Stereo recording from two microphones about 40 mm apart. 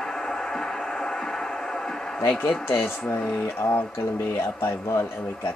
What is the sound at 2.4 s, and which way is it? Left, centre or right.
Speech, left.